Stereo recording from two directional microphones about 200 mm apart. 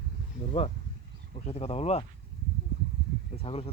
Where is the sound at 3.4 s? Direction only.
30° left (ahead or behind).